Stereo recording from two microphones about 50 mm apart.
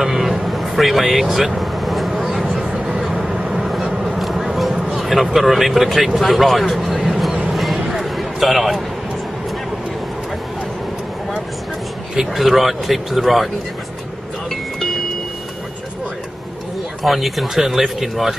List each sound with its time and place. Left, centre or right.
0.0 s vehicle: centre
2.6 s music: centre
3.0 s vehicle: centre
4.2 s a sound: centre
4.8 s speech: centre
7.5 s music: centre
7.9 s a sound: centre
12.2 s speech: centre
14.5 s music: centre
17.0 s speech: centre